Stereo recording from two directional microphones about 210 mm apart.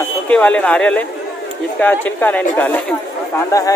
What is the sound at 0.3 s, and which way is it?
Speech, 5° left (ahead or behind).